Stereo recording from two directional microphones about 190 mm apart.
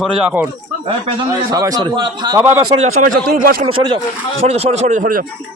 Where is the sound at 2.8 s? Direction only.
45° right (ahead or behind).